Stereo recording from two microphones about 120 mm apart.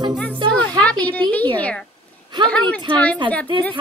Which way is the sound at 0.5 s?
10° left (ahead or behind).